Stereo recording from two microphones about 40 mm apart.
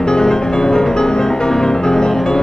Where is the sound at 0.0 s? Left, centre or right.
Centre.